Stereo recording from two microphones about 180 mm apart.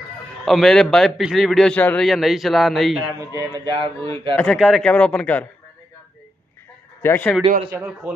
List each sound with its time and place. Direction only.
0.5 s a man's voice: centre (ahead or behind)
3.2 s speech: 25° right (ahead or behind)
4.4 s a man's voice: centre (ahead or behind)
7.0 s a man's voice: 10° left (ahead or behind)
7.7 s a man's voice: 5° right (ahead or behind)